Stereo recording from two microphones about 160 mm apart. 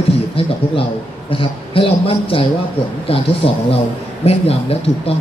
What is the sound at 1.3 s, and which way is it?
A man's voice, 35° left (ahead or behind).